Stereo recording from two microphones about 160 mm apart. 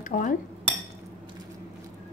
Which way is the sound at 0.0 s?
55° left (ahead or behind).